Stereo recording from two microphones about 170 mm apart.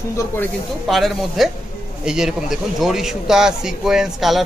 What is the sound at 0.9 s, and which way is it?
A man's voice, centre (ahead or behind).